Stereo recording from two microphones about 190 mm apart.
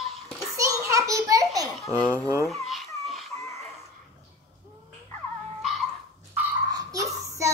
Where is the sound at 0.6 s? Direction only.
15° right (ahead or behind).